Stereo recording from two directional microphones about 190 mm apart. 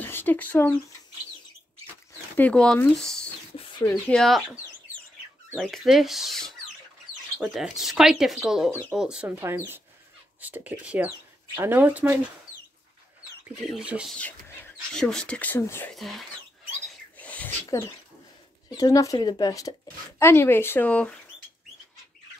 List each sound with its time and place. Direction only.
0.0 s a sound: 10° left (ahead or behind)
2.3 s speech: 5° left (ahead or behind)
3.5 s a sound: 25° left (ahead or behind)
3.9 s speech: centre (ahead or behind)
13.7 s speech: 5° right (ahead or behind); by 15.9 s 10° left (ahead or behind)
15.9 s speech: centre (ahead or behind)
16.8 s rodents: 5° left (ahead or behind)
17.6 s speech: 15° left (ahead or behind)